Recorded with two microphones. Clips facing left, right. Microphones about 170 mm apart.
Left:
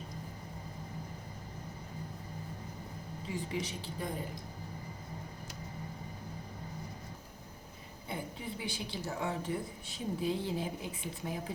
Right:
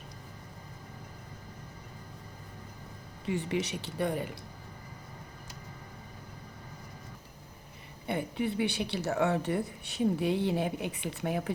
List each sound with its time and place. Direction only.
3.2 s speech: 70° right (ahead or behind)
8.0 s speech: 70° right (ahead or behind)